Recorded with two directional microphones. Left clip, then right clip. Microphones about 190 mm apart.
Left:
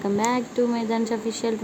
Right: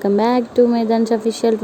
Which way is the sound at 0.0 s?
20° right (ahead or behind).